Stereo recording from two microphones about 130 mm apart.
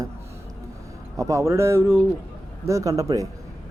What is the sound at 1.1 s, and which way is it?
A man's voice, 25° right (ahead or behind).